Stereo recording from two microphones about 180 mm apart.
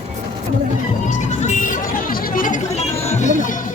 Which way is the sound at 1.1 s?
40° left (ahead or behind).